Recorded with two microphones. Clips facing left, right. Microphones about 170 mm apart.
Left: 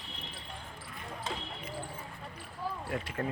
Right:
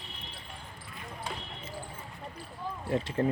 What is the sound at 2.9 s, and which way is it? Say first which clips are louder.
Speech: right 9 dB; 30° right (ahead or behind).